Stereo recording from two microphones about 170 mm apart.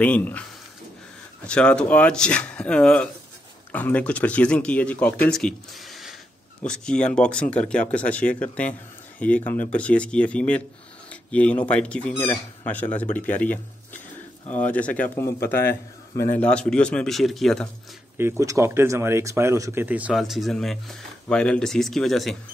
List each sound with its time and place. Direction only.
0.0 s speech: 10° left (ahead or behind)
18.1 s speech: 15° right (ahead or behind); by 22.4 s centre (ahead or behind)